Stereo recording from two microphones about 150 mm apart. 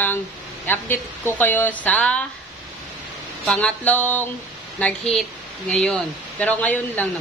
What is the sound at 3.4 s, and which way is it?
Speech, 10° left (ahead or behind).